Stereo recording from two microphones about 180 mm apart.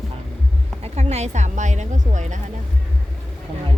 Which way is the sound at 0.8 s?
35° right (ahead or behind).